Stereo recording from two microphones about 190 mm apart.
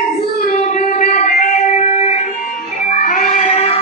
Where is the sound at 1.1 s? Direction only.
40° left (ahead or behind).